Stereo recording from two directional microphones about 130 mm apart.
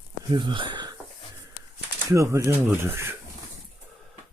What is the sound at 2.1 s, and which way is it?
Speech, 25° right (ahead or behind).